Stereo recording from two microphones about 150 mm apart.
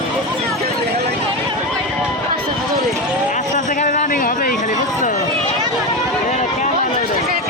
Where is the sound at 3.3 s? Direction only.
55° left (ahead or behind).